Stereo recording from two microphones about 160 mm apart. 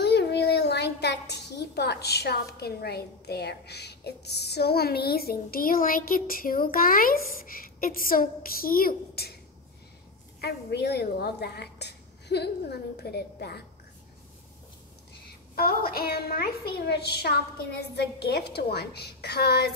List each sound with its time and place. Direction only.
0.0 s a child's voice: 90° left
10.4 s a woman's voice: 85° left
15.5 s a woman's voice: 70° left (ahead or behind)
16.7 s a woman's voice: 90° left